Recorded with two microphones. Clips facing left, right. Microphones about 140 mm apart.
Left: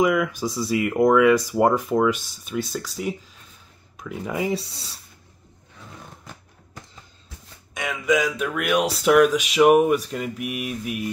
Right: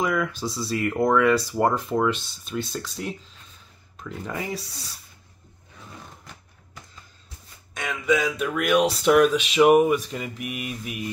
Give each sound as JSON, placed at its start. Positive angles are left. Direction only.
{"t": 0.0, "sound": "speech", "side_deg": 10}
{"t": 4.4, "sound": "speech", "side_deg": 25}
{"t": 7.7, "sound": "speech", "side_deg": 10}